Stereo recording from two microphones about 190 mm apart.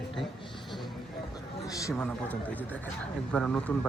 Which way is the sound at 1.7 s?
15° left (ahead or behind).